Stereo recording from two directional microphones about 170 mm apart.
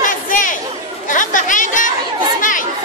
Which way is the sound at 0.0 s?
50° left (ahead or behind).